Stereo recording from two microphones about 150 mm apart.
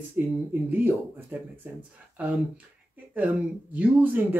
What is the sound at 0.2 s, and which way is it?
Speech, 10° right (ahead or behind).